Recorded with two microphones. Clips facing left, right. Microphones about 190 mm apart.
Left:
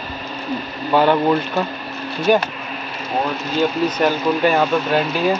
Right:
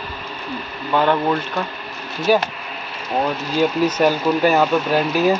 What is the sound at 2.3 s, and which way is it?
Speech, 5° right (ahead or behind).